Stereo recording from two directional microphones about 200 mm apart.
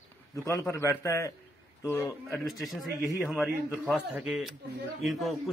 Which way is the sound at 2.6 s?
Centre (ahead or behind).